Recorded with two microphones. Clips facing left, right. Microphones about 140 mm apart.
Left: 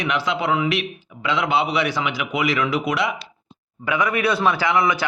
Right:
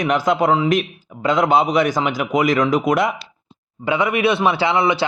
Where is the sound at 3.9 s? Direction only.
25° right (ahead or behind).